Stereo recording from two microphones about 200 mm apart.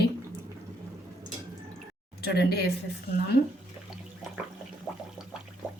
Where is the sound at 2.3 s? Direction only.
55° left (ahead or behind).